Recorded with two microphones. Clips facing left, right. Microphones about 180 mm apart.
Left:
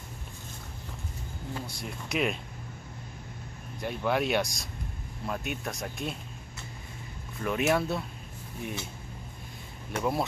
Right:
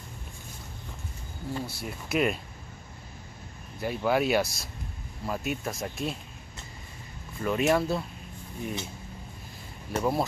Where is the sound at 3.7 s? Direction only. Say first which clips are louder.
Right 3 dB; 5° right (ahead or behind).